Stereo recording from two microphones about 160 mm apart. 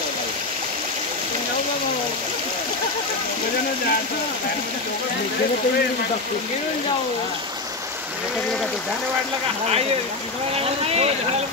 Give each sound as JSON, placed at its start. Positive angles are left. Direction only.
{"t": 10.5, "sound": "speech", "side_deg": -40}